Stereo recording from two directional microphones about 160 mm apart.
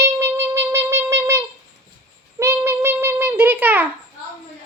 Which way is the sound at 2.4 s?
15° right (ahead or behind).